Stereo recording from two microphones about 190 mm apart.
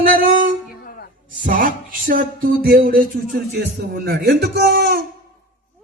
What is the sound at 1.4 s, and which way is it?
A man's voice, 45° right (ahead or behind).